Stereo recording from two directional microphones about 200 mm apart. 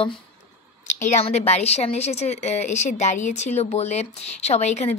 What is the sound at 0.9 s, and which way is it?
A woman's voice, 35° left (ahead or behind).